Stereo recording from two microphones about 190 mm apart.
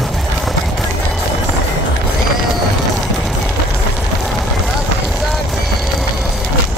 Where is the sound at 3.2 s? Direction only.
Centre (ahead or behind).